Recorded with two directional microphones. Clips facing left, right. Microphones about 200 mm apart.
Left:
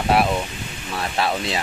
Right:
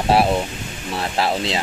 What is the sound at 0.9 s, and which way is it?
Speech, 25° right (ahead or behind).